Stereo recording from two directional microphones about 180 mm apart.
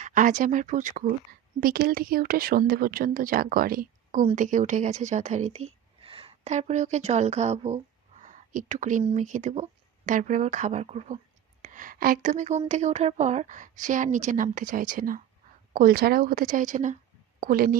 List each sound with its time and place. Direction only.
0.0 s speech: 45° right (ahead or behind)
1.3 s a woman's voice: 55° right (ahead or behind)